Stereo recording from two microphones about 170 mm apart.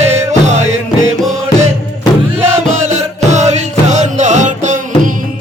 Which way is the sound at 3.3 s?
45° right (ahead or behind).